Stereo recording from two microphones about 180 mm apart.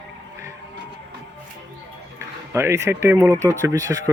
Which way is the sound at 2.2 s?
15° right (ahead or behind).